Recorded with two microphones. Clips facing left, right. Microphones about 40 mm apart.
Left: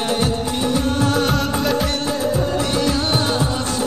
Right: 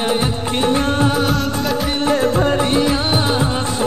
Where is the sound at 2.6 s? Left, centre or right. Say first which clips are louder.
Right 4 dB; right.